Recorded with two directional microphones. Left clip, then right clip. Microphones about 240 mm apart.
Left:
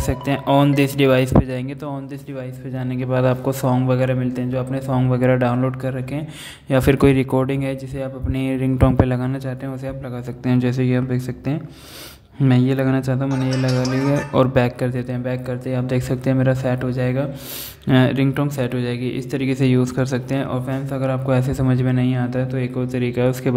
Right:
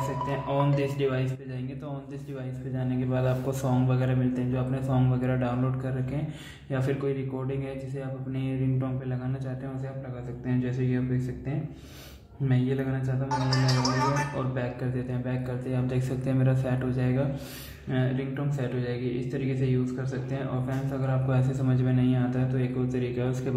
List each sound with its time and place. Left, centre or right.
0.3 s a man's voice: left
3.1 s speech: left
6.7 s a man's voice: left
10.4 s a man's voice: left
13.5 s speech: centre
14.3 s speech: left
17.8 s speech: left